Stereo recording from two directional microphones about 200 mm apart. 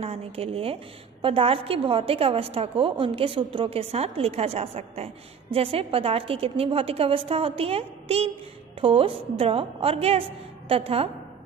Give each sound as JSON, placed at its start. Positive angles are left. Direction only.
{"t": 0.0, "sound": "a woman's voice", "side_deg": -30}